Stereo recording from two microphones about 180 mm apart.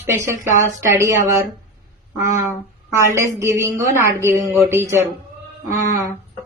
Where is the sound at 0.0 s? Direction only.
15° right (ahead or behind).